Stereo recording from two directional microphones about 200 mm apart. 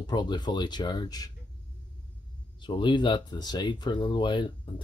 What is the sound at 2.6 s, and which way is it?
Speech, 25° left (ahead or behind).